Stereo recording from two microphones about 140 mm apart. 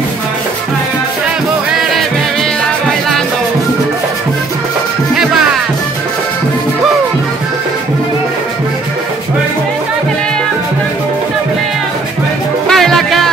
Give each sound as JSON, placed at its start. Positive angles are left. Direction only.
{"t": 12.6, "sound": "music", "side_deg": 0}